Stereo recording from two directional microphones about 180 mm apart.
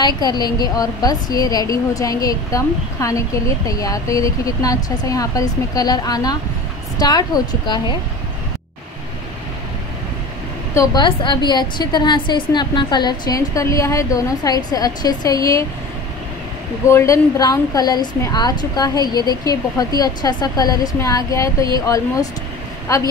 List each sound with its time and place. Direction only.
0.2 s a woman's voice: 25° left (ahead or behind)
10.7 s a woman's voice: 15° left (ahead or behind)
16.8 s a woman's voice: 15° left (ahead or behind)